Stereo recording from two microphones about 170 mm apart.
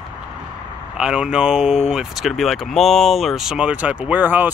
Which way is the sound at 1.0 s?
5° right (ahead or behind).